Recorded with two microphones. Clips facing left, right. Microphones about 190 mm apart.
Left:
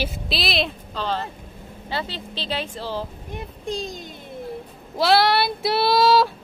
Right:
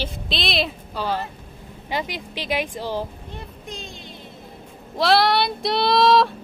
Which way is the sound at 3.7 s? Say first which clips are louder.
Left 10 dB; 35° left (ahead or behind).